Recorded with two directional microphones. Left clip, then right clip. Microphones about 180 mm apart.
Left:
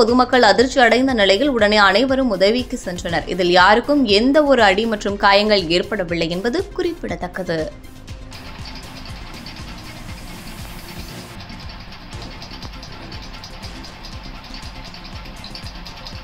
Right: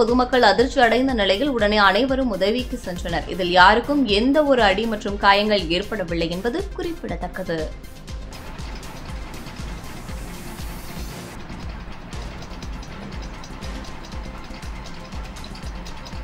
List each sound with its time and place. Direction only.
0.0 s a woman's voice: 20° left (ahead or behind)